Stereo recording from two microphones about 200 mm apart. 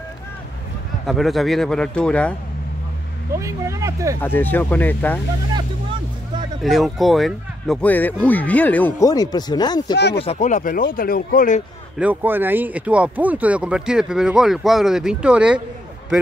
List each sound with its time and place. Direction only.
1.0 s speech: centre (ahead or behind)
3.3 s speech: 15° right (ahead or behind)
4.2 s speech: 10° left (ahead or behind)
6.6 s speech: centre (ahead or behind)
9.1 s speech: 20° left (ahead or behind)
9.9 s speech: 60° left (ahead or behind)
10.2 s speech: 35° left (ahead or behind)
12.0 s speech: 10° right (ahead or behind)